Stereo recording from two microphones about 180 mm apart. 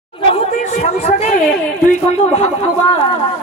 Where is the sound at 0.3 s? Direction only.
35° left (ahead or behind).